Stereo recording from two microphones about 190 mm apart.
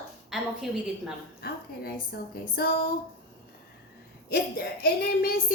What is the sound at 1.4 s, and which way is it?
Speech, 55° left (ahead or behind).